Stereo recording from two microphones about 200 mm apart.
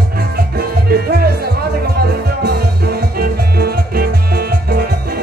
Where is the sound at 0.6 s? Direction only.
50° right (ahead or behind).